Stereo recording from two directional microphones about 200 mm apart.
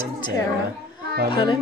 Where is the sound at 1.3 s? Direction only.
25° left (ahead or behind).